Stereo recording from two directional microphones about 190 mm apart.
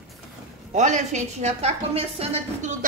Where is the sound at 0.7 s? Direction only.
40° right (ahead or behind).